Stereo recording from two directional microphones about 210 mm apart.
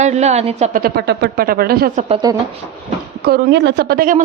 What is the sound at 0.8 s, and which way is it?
Speech, 50° right (ahead or behind).